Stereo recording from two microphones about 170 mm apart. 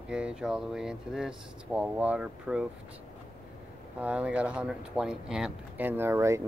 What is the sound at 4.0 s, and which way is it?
Speech, 5° right (ahead or behind).